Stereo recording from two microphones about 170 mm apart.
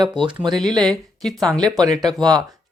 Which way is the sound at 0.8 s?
5° left (ahead or behind).